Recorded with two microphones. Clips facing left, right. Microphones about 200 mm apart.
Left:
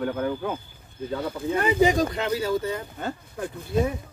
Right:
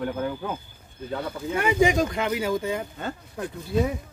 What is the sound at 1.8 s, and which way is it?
Speech, 15° right (ahead or behind).